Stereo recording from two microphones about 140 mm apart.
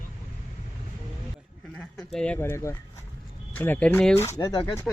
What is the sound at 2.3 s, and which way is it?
Speech, 20° left (ahead or behind).